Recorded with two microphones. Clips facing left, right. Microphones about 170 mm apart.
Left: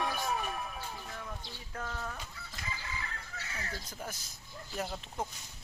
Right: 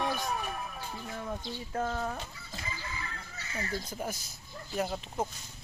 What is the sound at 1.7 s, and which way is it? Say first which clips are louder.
Speech: right 8 dB; 35° right (ahead or behind).